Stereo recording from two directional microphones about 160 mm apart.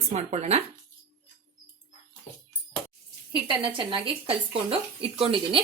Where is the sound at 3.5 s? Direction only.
30° right (ahead or behind).